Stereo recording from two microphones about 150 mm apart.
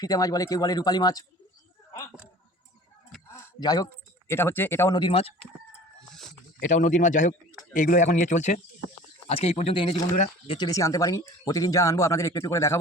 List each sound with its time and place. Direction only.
0.0 s speech: 25° left (ahead or behind)
3.6 s speech: 25° left (ahead or behind)
3.8 s speech: 15° left (ahead or behind)
4.9 s speech: 30° left (ahead or behind)
6.6 s speech: 60° left (ahead or behind); by 10.7 s 35° left (ahead or behind)
10.7 s speech: 20° left (ahead or behind)